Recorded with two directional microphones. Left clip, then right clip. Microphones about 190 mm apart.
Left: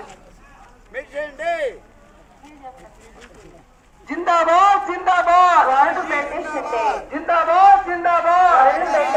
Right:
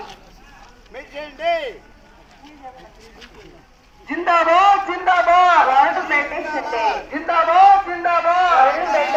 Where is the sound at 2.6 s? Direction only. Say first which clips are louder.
Even; 30° right (ahead or behind).